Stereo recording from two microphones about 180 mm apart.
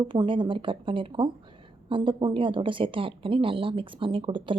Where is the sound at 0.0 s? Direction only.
25° right (ahead or behind).